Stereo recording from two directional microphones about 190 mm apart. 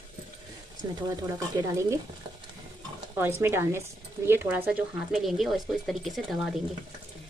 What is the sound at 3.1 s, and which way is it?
Speech, 15° right (ahead or behind).